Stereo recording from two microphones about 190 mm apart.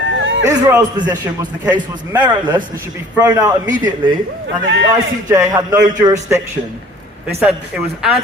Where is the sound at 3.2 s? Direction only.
20° right (ahead or behind).